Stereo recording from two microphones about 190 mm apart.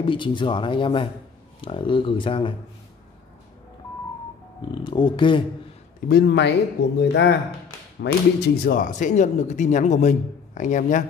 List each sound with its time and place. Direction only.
0.0 s speech: 25° left (ahead or behind)
4.6 s speech: 25° left (ahead or behind)
5.9 s speech: 55° left (ahead or behind)